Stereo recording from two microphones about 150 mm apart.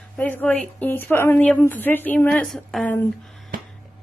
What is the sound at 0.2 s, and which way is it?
A woman's voice, 10° left (ahead or behind).